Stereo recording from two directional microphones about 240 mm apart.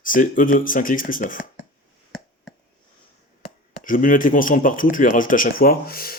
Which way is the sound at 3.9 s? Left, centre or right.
Left.